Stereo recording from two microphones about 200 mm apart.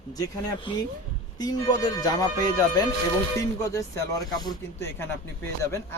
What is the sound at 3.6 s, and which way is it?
Speech, 15° left (ahead or behind).